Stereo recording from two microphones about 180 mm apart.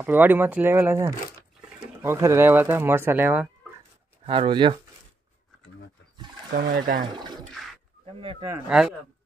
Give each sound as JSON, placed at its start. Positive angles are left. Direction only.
{"t": 0.0, "sound": "speech", "side_deg": -10}
{"t": 4.3, "sound": "speech", "side_deg": -30}
{"t": 6.5, "sound": "speech", "side_deg": -55}
{"t": 8.2, "sound": "speech", "side_deg": -30}
{"t": 8.6, "sound": "speech", "side_deg": -5}